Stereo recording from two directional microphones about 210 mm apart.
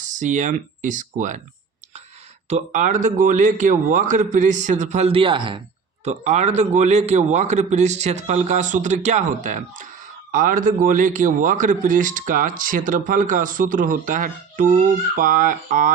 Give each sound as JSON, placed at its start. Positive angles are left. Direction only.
{"t": 0.2, "sound": "a man's voice", "side_deg": -35}
{"t": 2.5, "sound": "a man's voice", "side_deg": -35}